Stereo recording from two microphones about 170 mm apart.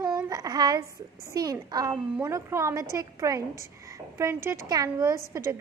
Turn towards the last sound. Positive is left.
turn(degrees=-15)  # may be behind; listen again after turning